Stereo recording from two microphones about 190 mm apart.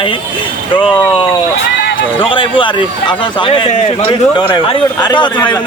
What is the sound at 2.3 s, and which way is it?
A man's voice, 25° left (ahead or behind).